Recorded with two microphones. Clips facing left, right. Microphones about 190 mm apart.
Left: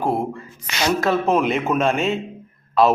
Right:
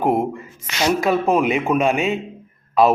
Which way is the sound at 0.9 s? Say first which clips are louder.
Right 1 dB; 10° right (ahead or behind).